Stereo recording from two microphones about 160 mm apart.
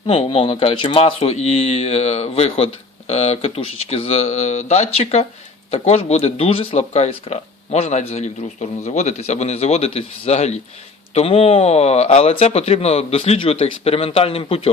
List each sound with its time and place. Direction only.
0.1 s speech: 35° left (ahead or behind)